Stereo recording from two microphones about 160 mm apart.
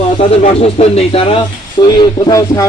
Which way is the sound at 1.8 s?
25° left (ahead or behind).